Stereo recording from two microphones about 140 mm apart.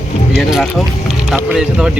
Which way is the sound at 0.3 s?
Centre (ahead or behind).